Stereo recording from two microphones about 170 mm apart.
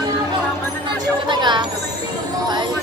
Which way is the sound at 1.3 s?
25° right (ahead or behind).